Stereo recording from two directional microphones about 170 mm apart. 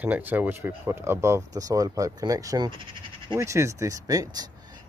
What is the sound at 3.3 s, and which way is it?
Speech, 15° right (ahead or behind).